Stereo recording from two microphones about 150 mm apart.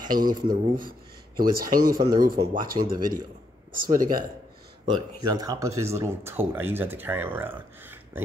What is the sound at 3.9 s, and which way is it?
Speech, 65° right (ahead or behind).